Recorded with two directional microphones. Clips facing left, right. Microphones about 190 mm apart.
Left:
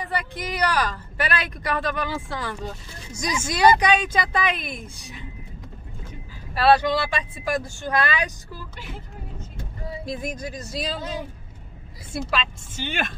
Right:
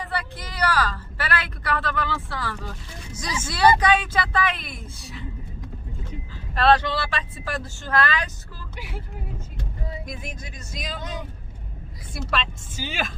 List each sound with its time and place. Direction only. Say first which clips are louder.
0.0 s speech: left 2 dB; 15° left (ahead or behind)
6.5 s speech: left 1 dB; 10° left (ahead or behind)
8.7 s speech: right 5 dB; 10° right (ahead or behind)
10.0 s speech: left 7 dB; 40° left (ahead or behind)
12.3 s speech: right 4 dB; centre (ahead or behind)